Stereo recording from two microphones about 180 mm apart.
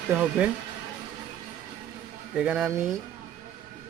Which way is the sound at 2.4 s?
5° right (ahead or behind).